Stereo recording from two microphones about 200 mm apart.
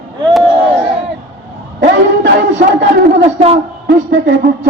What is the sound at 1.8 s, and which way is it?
Speech, 55° right (ahead or behind).